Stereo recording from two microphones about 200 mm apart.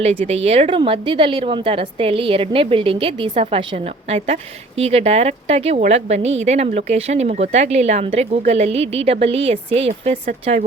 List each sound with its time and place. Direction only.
0.3 s a woman's voice: 30° right (ahead or behind)